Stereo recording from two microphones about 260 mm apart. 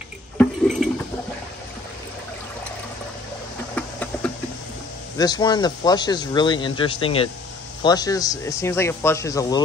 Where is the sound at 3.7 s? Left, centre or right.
Centre.